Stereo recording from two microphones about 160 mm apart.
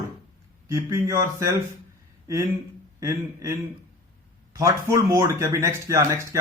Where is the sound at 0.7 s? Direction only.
20° right (ahead or behind).